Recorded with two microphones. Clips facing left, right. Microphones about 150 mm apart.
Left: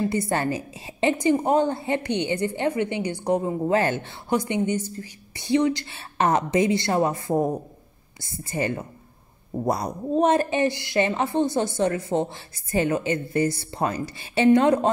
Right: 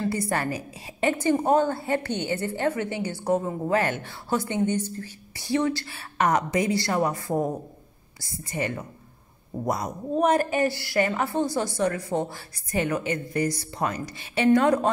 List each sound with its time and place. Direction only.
0.0 s a woman's voice: 25° left (ahead or behind)
3.7 s speech: 30° left (ahead or behind)